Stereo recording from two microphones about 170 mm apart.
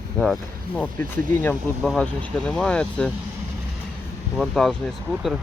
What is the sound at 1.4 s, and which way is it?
Speech, 10° left (ahead or behind).